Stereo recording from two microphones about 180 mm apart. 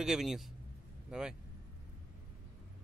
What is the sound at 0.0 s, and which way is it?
A man's voice, centre (ahead or behind).